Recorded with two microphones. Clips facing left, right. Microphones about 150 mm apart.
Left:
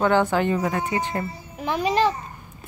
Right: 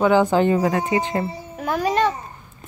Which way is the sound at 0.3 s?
30° right (ahead or behind).